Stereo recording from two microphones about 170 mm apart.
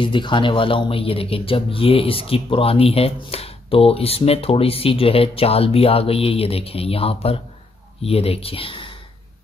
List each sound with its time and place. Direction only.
0.0 s speech: 30° left (ahead or behind)